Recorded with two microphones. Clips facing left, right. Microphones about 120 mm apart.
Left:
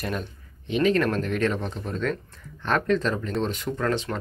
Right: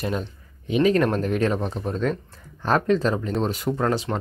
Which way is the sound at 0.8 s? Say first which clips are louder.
Right 2 dB; 40° right (ahead or behind).